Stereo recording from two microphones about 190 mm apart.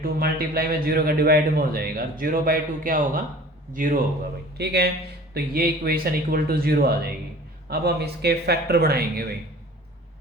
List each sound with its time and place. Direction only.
0.0 s a man's voice: 50° right (ahead or behind)
4.5 s a man's voice: 60° right (ahead or behind)